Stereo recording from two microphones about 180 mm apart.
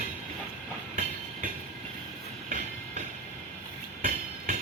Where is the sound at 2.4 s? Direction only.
45° right (ahead or behind).